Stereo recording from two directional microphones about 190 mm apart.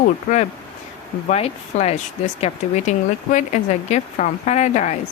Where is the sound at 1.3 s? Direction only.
35° left (ahead or behind).